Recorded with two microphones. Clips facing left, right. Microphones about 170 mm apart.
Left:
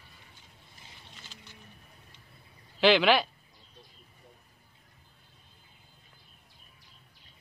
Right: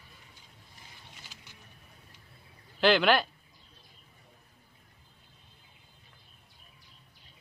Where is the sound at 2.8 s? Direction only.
5° left (ahead or behind).